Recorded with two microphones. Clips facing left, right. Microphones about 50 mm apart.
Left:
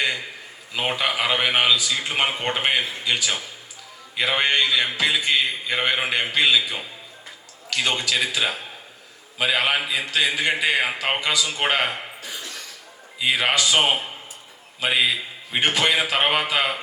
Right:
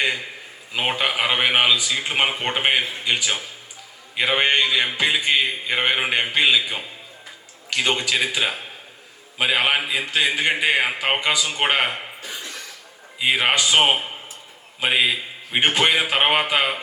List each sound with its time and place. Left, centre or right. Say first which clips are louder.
0.7 s a man's voice: right 1 dB; right
13.1 s a man's voice: right 1 dB; centre